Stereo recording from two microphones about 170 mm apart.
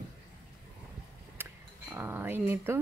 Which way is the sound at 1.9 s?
10° right (ahead or behind).